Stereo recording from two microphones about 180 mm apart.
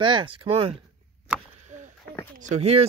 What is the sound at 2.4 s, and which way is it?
Speech, 35° right (ahead or behind).